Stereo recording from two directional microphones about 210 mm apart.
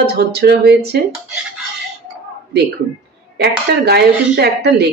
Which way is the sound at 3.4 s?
50° right (ahead or behind).